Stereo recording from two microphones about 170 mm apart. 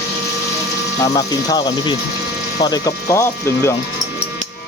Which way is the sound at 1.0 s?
20° left (ahead or behind).